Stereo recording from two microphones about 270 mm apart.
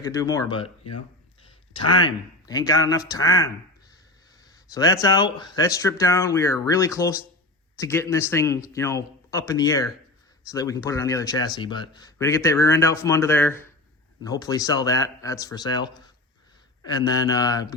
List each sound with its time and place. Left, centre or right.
0.0 s speech: centre
1.5 s a sound: centre
2.0 s speech: centre
4.5 s speech: centre